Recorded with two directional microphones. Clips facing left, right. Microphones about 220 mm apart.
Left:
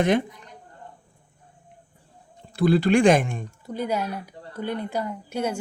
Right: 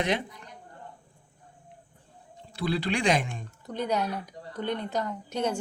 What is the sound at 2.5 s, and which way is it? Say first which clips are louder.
Speech: left 10 dB; 50° left (ahead or behind).